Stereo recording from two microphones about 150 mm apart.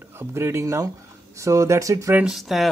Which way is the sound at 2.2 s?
5° right (ahead or behind).